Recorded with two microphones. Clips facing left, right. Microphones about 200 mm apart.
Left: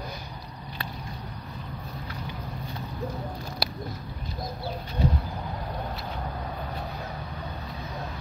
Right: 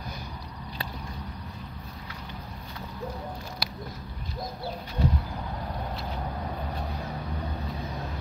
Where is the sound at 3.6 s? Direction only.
35° left (ahead or behind).